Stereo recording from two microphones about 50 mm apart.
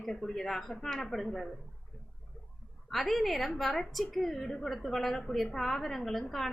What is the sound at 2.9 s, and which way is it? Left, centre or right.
A woman's voice, centre.